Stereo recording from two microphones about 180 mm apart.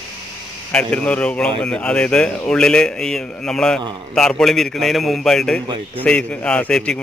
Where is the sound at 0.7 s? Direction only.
5° left (ahead or behind).